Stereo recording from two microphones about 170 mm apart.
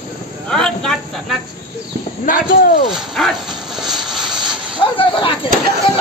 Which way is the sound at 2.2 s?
55° left (ahead or behind).